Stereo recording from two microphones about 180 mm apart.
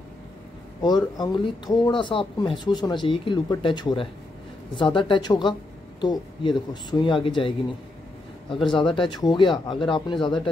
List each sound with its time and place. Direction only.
0.8 s speech: 20° left (ahead or behind)
8.7 s speech: 25° left (ahead or behind)